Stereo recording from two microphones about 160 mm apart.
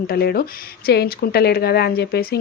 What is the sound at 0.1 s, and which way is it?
Speech, 75° left (ahead or behind).